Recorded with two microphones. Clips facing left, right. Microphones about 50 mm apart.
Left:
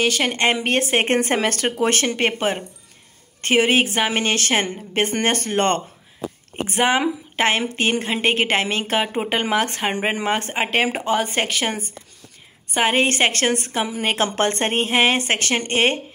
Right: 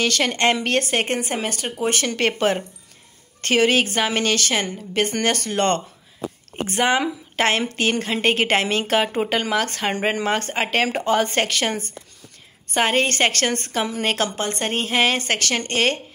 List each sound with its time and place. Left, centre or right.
0.0 s a woman's voice: centre
1.2 s speech: left
2.0 s a woman's voice: centre
6.5 s a woman's voice: centre
9.4 s a woman's voice: left
14.3 s a woman's voice: left